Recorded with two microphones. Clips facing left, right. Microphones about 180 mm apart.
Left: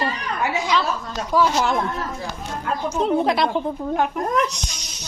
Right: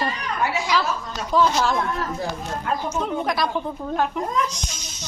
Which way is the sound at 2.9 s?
30° left (ahead or behind).